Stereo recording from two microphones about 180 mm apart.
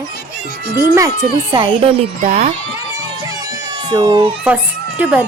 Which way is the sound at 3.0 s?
20° right (ahead or behind).